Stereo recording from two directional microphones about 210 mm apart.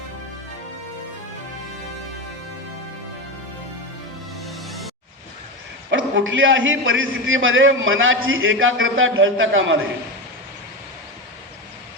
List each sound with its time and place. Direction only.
4.4 s music: centre (ahead or behind)
5.9 s a man's voice: 65° right (ahead or behind)